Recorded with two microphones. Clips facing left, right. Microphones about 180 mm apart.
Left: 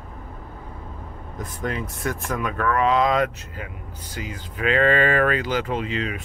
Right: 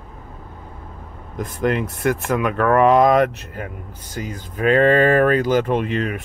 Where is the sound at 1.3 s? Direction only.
70° right (ahead or behind); by 6.2 s 55° right (ahead or behind).